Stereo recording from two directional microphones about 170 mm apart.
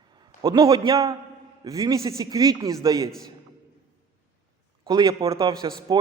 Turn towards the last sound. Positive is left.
turn(degrees=-25)  # may be behind; listen again after turning